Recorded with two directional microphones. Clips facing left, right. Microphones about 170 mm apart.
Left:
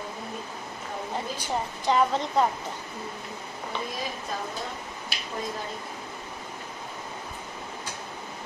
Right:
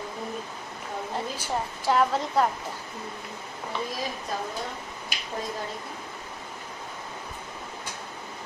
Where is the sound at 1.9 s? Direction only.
Centre (ahead or behind).